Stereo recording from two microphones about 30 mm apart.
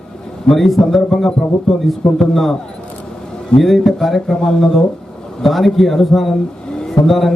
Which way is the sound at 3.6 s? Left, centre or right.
Centre.